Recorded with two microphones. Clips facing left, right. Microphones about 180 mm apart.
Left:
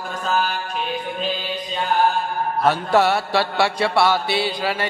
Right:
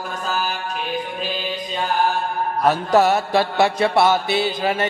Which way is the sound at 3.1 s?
20° right (ahead or behind).